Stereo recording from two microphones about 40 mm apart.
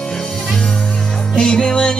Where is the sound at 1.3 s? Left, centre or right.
Centre.